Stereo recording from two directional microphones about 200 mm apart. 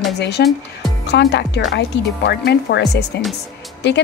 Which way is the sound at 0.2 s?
55° left (ahead or behind).